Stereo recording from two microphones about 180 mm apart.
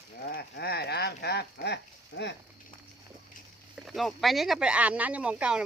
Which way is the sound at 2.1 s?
90° left.